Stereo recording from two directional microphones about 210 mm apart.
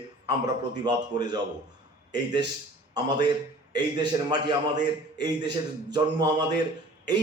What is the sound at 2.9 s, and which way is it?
A man's voice, 20° right (ahead or behind).